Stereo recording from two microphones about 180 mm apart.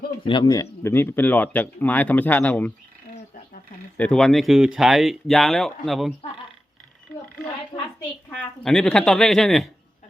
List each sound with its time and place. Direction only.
0.3 s speech: 20° left (ahead or behind)
3.9 s speech: 5° left (ahead or behind)
7.7 s a sound: 25° left (ahead or behind)
8.3 s speech: centre (ahead or behind)